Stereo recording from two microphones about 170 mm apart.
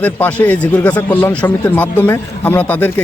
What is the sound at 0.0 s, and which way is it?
A man's voice, 10° left (ahead or behind).